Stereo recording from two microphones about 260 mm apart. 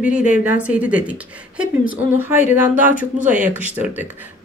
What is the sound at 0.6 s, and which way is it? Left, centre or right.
A woman's voice, centre.